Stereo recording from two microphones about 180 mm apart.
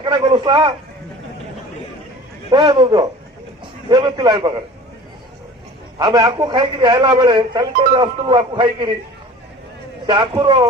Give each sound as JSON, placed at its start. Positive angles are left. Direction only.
{"t": 0.0, "sound": "speech", "side_deg": -25}
{"t": 2.5, "sound": "speech", "side_deg": -25}
{"t": 6.0, "sound": "speech", "side_deg": -25}
{"t": 10.1, "sound": "speech", "side_deg": -25}